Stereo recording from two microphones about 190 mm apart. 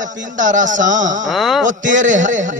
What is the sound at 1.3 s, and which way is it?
Speech, centre (ahead or behind).